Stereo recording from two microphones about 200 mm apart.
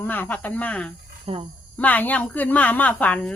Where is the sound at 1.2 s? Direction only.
30° right (ahead or behind).